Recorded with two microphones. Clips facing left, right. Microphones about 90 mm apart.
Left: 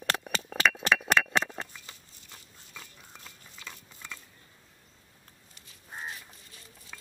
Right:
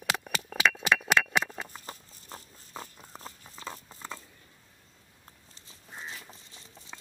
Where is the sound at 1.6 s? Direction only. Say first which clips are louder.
Right 6 dB; 40° right (ahead or behind).